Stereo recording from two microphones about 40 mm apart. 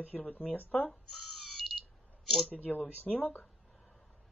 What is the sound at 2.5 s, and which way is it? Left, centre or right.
Speech, left.